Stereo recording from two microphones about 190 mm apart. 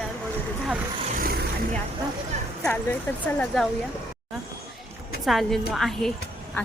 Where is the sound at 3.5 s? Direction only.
Centre (ahead or behind).